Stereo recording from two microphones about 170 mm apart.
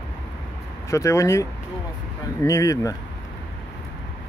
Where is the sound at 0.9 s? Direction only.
15° left (ahead or behind).